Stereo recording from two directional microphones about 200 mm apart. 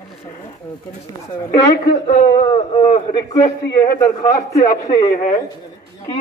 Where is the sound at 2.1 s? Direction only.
35° left (ahead or behind).